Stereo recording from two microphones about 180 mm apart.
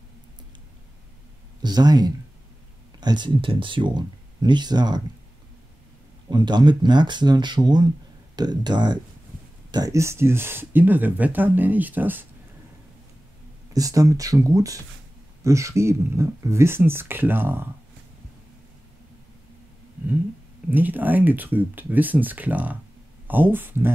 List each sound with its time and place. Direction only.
1.6 s speech: 25° right (ahead or behind)
6.3 s speech: 25° right (ahead or behind)
13.7 s speech: 20° right (ahead or behind)
20.7 s speech: 10° right (ahead or behind)